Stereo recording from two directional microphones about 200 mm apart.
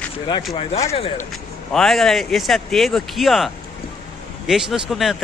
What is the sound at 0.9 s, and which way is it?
Speech, 30° left (ahead or behind).